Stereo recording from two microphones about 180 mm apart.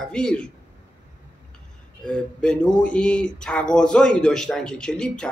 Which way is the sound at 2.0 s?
5° left (ahead or behind).